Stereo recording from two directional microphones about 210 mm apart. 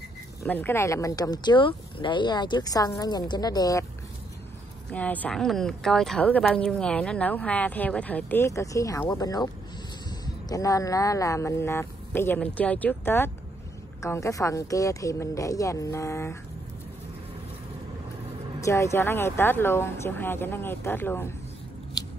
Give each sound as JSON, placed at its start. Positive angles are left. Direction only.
{"t": 0.4, "sound": "speech", "side_deg": 10}
{"t": 4.9, "sound": "speech", "side_deg": 5}
{"t": 18.6, "sound": "speech", "side_deg": 15}